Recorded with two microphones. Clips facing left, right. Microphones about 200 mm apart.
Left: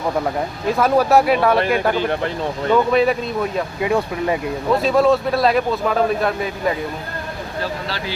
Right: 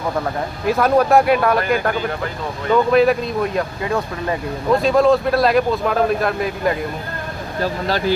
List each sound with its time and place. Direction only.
0.7 s a man's voice: centre (ahead or behind)
3.8 s speech: 15° left (ahead or behind)
4.7 s a man's voice: centre (ahead or behind)
7.6 s speech: 45° right (ahead or behind)